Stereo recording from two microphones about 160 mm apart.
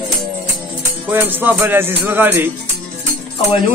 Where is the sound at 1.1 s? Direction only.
10° right (ahead or behind).